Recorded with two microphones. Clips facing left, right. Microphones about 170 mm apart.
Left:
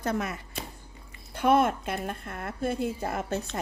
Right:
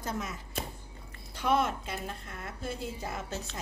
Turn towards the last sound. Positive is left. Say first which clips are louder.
# left 7 dB
turn(degrees=55)  # may be behind; listen again after turning